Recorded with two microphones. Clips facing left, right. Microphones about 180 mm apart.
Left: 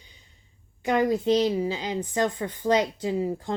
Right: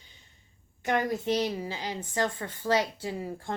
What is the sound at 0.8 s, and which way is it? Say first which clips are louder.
A woman's voice: left 5 dB; 15° left (ahead or behind).